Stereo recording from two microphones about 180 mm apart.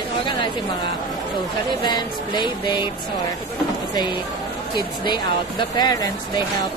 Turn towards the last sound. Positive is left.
turn(degrees=20)  # may be behind; listen again after turning